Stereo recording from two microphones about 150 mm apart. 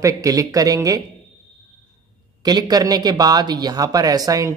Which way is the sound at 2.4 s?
25° right (ahead or behind).